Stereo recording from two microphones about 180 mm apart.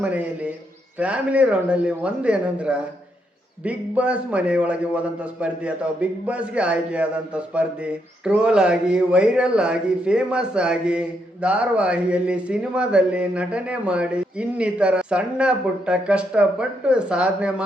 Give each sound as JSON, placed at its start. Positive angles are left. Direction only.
{"t": 0.0, "sound": "a man's voice", "side_deg": -10}